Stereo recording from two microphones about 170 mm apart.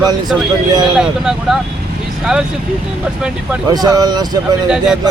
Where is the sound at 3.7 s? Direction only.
20° right (ahead or behind).